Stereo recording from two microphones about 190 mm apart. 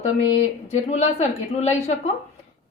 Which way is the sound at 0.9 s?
35° left (ahead or behind).